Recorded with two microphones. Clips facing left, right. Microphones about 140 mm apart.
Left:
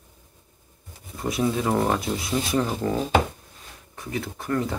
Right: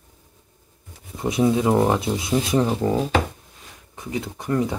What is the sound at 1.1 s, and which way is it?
Speech, 20° right (ahead or behind).